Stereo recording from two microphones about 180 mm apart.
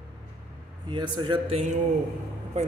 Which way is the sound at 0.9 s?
25° right (ahead or behind).